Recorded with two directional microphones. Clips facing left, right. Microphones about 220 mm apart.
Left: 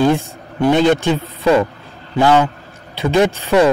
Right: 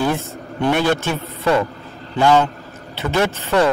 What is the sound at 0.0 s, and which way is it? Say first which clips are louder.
A man's voice: left 6 dB; 15° left (ahead or behind).